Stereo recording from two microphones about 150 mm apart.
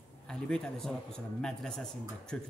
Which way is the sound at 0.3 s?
5° left (ahead or behind).